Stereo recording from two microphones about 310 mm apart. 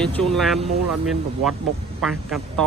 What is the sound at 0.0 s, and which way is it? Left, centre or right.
Speech, centre.